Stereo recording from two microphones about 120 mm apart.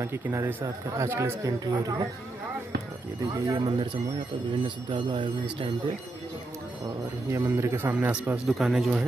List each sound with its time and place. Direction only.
0.0 s speech: 20° right (ahead or behind)
1.6 s speech: 35° right (ahead or behind)
3.3 s speech: 25° right (ahead or behind)
3.6 s speech: 40° right (ahead or behind)
7.2 s speech: 25° right (ahead or behind)
8.5 s speech: centre (ahead or behind)